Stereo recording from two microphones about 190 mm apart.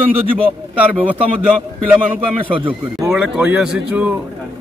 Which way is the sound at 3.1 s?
5° right (ahead or behind).